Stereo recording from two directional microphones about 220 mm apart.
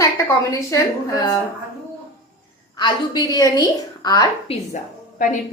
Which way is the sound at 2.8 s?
20° left (ahead or behind).